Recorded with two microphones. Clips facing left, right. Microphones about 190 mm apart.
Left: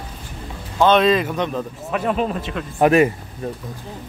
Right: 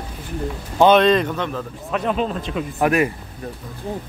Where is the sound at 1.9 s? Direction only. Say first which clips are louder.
Even; 5° left (ahead or behind).